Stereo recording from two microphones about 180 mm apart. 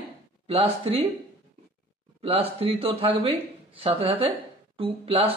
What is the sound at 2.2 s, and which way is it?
Speech, 30° right (ahead or behind).